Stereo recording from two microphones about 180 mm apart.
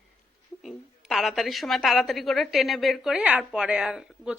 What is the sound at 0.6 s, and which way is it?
A woman's voice, centre (ahead or behind).